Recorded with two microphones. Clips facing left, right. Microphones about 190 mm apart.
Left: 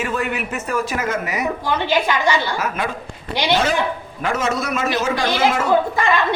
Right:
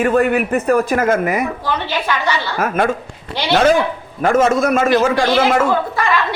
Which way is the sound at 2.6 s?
50° right (ahead or behind).